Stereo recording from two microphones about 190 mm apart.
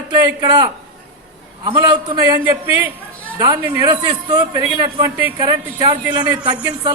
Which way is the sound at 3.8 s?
25° right (ahead or behind).